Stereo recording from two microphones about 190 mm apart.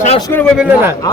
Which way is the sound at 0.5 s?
10° right (ahead or behind).